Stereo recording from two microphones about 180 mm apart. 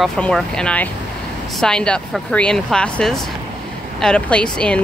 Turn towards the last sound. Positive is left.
turn(degrees=5)  # may be behind; listen again after turning